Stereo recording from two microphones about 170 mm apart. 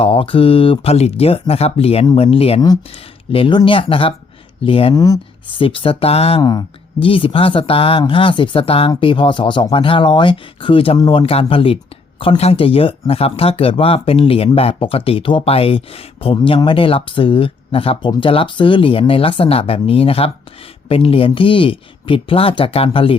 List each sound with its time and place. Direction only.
0.0 s speech: 30° left (ahead or behind)
4.9 s speech: 20° left (ahead or behind)
5.5 s speech: 30° left (ahead or behind)
6.4 s speech: 25° left (ahead or behind)